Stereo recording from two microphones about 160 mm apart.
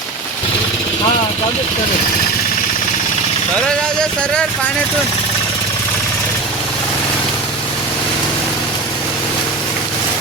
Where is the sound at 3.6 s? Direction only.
5° left (ahead or behind).